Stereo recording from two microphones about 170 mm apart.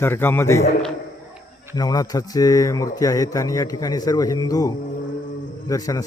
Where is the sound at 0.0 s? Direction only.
15° left (ahead or behind).